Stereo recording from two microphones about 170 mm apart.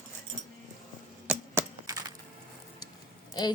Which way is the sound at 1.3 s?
5° right (ahead or behind).